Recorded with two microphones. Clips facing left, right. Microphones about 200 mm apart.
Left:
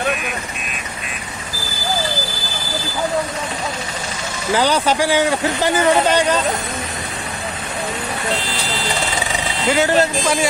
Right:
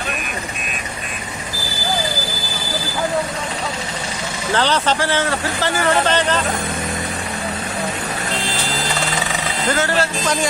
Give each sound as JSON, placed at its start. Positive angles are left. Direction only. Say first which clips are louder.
{"t": 4.6, "sound": "a man's voice", "louder": "left 2 dB", "side_deg": 10}
{"t": 9.7, "sound": "a man's voice", "louder": "left 4 dB", "side_deg": 15}